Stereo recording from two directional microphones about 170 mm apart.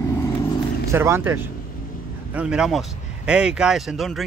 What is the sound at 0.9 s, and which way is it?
Speech, 15° right (ahead or behind).